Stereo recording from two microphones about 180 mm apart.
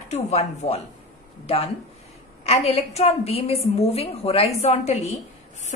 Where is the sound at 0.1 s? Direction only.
35° left (ahead or behind).